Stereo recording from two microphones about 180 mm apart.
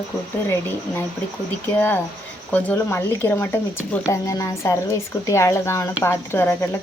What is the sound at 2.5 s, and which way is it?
Speech, 10° left (ahead or behind).